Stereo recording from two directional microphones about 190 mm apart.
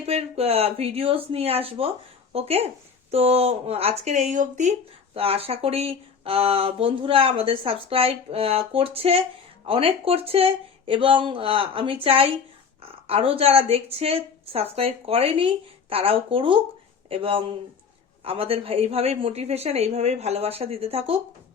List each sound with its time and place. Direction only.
0.0 s speech: 35° right (ahead or behind)